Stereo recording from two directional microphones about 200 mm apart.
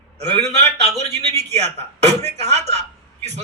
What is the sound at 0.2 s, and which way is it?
A man's voice, 35° right (ahead or behind).